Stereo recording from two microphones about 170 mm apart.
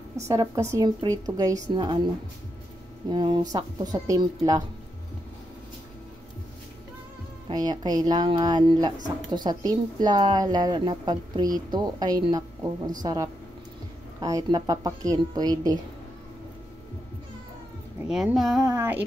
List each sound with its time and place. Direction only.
0.3 s speech: 15° right (ahead or behind)
3.1 s speech: 25° right (ahead or behind)
7.4 s speech: 25° right (ahead or behind)
18.0 s speech: 5° right (ahead or behind)
18.7 s a sound: 15° right (ahead or behind)